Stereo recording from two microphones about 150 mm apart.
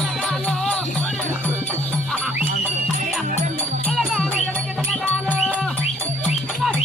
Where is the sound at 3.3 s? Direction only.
55° right (ahead or behind).